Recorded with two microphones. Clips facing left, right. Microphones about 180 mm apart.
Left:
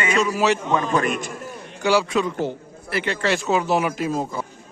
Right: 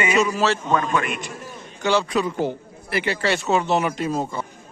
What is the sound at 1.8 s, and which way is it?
Speech, 5° left (ahead or behind).